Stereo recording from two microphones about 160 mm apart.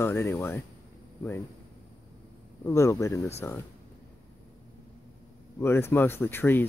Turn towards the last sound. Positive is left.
turn(degrees=15)  # may be behind; listen again after turning